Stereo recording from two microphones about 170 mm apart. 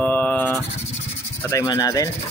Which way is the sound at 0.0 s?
10° left (ahead or behind).